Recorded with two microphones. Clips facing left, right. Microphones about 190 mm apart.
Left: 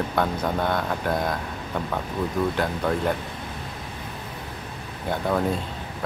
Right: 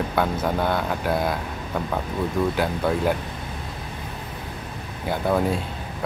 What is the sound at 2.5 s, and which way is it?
Speech, 5° right (ahead or behind).